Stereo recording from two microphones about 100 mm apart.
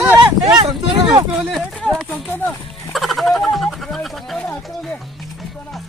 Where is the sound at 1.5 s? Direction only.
5° left (ahead or behind).